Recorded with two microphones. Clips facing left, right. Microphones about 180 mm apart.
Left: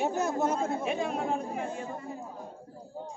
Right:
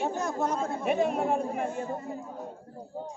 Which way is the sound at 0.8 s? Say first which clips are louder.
Right 4 dB; 60° right (ahead or behind).